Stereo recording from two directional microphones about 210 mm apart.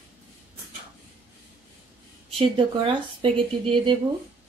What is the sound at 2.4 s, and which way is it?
Speech, 25° right (ahead or behind).